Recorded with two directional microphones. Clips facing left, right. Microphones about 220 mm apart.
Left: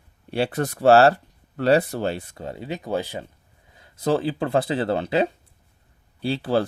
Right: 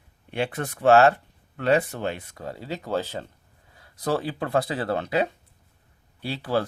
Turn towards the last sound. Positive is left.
turn(degrees=30)  # may be behind; listen again after turning